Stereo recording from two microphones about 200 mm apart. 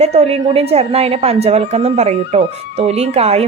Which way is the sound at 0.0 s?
30° right (ahead or behind).